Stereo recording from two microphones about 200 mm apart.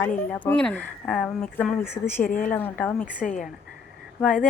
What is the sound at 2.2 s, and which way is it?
Speech, 45° left (ahead or behind).